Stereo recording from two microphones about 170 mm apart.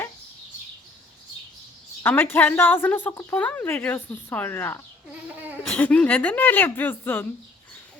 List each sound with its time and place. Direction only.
2.0 s a woman's voice: 10° left (ahead or behind)